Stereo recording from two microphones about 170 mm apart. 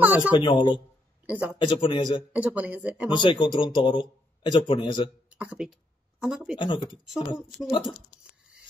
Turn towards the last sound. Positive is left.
turn(degrees=-5)  # may be behind; listen again after turning